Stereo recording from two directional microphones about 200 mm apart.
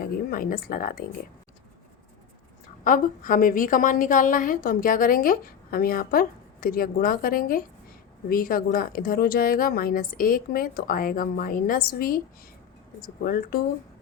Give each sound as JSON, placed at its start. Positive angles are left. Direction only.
{"t": 0.0, "sound": "a woman's voice", "side_deg": 45}
{"t": 2.8, "sound": "a woman's voice", "side_deg": 40}